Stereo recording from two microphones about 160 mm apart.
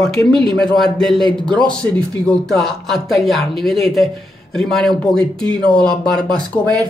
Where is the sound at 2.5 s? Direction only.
Centre (ahead or behind).